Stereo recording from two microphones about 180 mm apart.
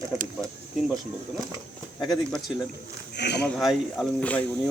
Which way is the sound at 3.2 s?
70° left (ahead or behind).